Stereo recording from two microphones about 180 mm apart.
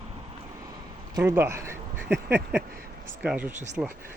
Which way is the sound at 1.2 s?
15° right (ahead or behind).